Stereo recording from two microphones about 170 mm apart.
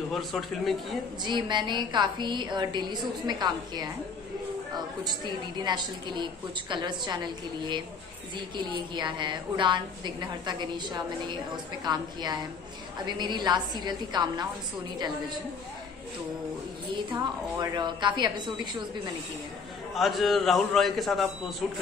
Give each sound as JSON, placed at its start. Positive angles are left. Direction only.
{"t": 0.1, "sound": "a man's voice", "side_deg": 0}
{"t": 1.2, "sound": "a woman's voice", "side_deg": -25}
{"t": 17.6, "sound": "a woman's voice", "side_deg": -25}
{"t": 19.9, "sound": "a man's voice", "side_deg": 0}